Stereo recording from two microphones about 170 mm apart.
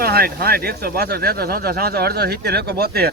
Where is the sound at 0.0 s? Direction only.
65° right (ahead or behind).